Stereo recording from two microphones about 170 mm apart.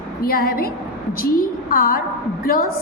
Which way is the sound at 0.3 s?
60° left (ahead or behind).